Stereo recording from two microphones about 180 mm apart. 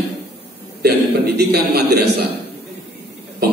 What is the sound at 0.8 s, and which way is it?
A man's voice, 65° right (ahead or behind).